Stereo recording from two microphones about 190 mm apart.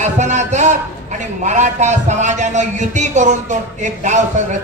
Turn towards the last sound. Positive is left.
turn(degrees=-40)  # may be behind; listen again after turning